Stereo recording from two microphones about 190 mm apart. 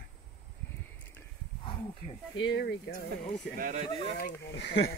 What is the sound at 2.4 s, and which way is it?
Speech, 65° left (ahead or behind).